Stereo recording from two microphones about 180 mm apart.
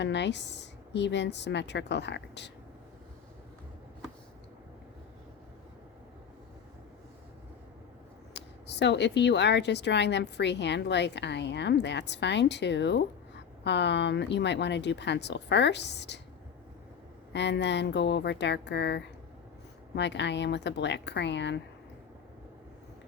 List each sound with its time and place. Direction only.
0.0 s speech: 75° left (ahead or behind)
8.3 s speech: 70° left (ahead or behind)
17.3 s speech: 75° left (ahead or behind)